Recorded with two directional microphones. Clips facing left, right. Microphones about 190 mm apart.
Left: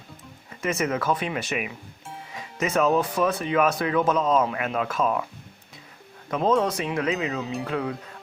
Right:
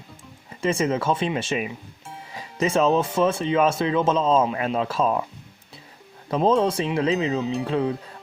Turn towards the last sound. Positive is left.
turn(degrees=-25)  # may be behind; listen again after turning